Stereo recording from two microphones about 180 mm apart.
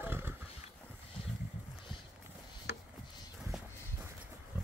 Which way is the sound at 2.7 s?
65° left (ahead or behind).